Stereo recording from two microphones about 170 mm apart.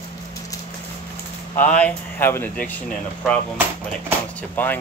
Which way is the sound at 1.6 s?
10° left (ahead or behind).